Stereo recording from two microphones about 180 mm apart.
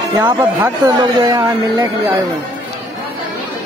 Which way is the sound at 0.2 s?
10° right (ahead or behind).